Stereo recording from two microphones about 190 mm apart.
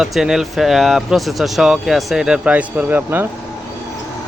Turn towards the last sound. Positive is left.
turn(degrees=-10)  # may be behind; listen again after turning